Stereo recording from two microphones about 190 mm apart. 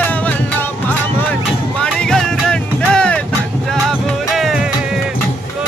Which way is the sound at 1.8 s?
5° left (ahead or behind).